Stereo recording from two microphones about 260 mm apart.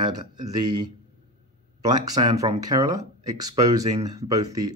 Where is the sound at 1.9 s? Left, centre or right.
Centre.